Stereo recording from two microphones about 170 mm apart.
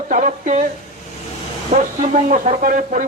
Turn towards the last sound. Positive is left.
turn(degrees=-50)  # may be behind; listen again after turning